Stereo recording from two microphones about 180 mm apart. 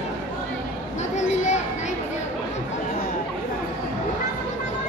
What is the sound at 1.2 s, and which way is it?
Children playing, 40° left (ahead or behind).